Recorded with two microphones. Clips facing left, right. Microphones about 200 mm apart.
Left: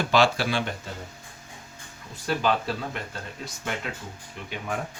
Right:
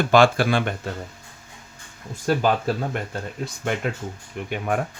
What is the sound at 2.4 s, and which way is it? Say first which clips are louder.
Speech: right 4 dB; 50° right (ahead or behind).